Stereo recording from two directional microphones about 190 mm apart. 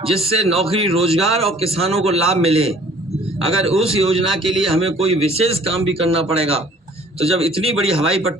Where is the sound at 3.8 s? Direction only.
30° right (ahead or behind).